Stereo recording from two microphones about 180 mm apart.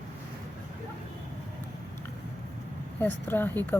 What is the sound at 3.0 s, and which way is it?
Speech, 10° left (ahead or behind).